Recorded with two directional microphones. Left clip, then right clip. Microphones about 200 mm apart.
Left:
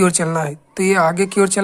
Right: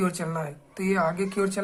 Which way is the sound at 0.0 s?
45° left (ahead or behind).